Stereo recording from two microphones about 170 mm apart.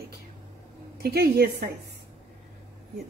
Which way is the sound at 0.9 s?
65° right (ahead or behind).